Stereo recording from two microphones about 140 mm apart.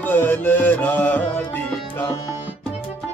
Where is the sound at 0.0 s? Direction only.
15° left (ahead or behind).